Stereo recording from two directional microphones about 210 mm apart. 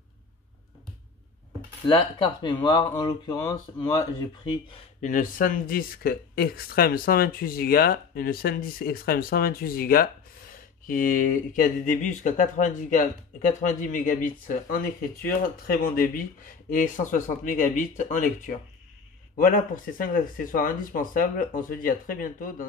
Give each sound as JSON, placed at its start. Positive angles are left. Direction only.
{"t": 1.9, "sound": "speech", "side_deg": 25}
{"t": 5.0, "sound": "speech", "side_deg": 40}